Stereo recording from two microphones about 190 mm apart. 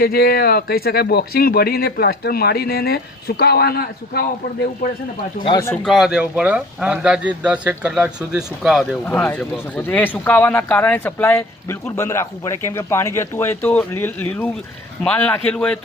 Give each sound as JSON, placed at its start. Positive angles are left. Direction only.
{"t": 0.0, "sound": "speech", "side_deg": 55}
{"t": 5.4, "sound": "speech", "side_deg": 25}
{"t": 5.8, "sound": "speech", "side_deg": 0}
{"t": 9.0, "sound": "a man's voice", "side_deg": 10}